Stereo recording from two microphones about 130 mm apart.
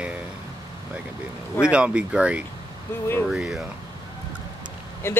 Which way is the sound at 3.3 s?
5° right (ahead or behind).